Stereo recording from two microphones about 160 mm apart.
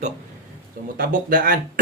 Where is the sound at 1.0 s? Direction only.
60° right (ahead or behind).